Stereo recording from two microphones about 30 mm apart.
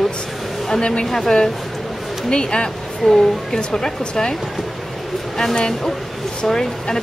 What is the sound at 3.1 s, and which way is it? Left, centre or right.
Speech, centre.